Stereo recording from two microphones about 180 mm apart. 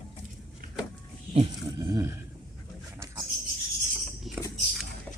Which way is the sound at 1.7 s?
20° right (ahead or behind).